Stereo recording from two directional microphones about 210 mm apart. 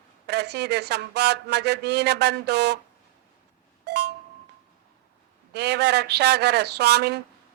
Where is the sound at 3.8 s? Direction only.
50° right (ahead or behind).